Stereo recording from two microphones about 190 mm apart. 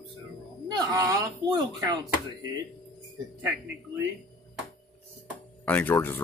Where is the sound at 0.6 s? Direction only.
20° right (ahead or behind).